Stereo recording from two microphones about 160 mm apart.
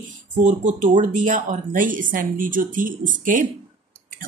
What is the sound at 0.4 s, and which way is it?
Speech, 50° right (ahead or behind).